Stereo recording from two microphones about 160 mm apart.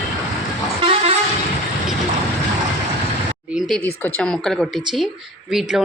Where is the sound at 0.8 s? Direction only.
45° right (ahead or behind).